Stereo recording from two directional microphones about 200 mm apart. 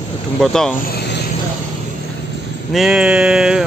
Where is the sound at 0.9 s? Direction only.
55° left (ahead or behind).